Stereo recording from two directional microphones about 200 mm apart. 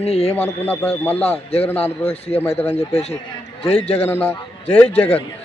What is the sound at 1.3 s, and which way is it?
Speech, 30° left (ahead or behind).